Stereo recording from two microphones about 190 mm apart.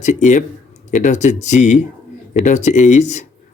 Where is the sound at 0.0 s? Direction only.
40° left (ahead or behind).